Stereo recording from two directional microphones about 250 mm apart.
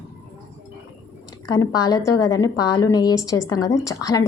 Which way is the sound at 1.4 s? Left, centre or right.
Centre.